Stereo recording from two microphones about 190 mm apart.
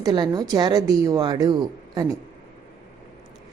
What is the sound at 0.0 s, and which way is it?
A woman's voice, 20° right (ahead or behind).